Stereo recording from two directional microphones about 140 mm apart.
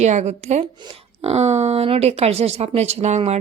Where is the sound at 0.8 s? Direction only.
40° right (ahead or behind).